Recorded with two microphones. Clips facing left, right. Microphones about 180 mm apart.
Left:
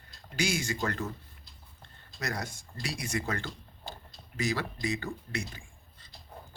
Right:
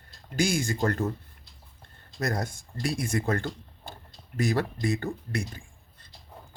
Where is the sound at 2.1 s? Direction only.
50° right (ahead or behind).